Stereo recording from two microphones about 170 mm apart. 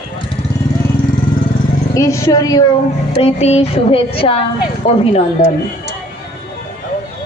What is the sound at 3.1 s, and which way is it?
Speech, 40° left (ahead or behind).